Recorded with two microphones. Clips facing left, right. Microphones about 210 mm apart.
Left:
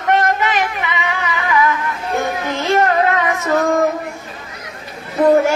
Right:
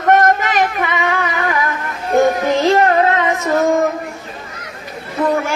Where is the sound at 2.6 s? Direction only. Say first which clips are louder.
Right 2 dB; 35° right (ahead or behind).